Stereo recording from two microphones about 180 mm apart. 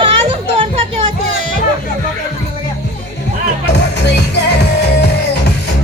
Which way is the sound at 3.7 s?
70° left (ahead or behind).